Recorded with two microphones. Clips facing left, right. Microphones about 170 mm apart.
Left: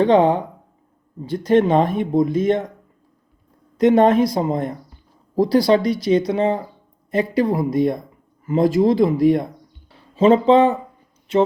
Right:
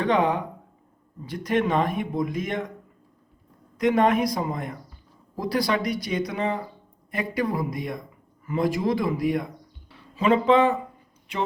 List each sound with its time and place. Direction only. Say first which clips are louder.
0.0 s speech: left 8 dB; 30° left (ahead or behind)
3.8 s speech: left 7 dB; 30° left (ahead or behind)